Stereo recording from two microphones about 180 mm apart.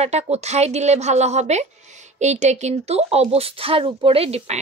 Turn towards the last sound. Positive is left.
turn(degrees=-35)  # may be behind; listen again after turning